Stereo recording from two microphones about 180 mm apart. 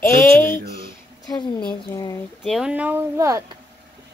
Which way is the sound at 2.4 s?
5° right (ahead or behind).